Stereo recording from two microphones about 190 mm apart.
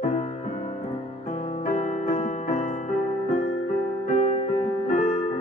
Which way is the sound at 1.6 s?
45° left (ahead or behind).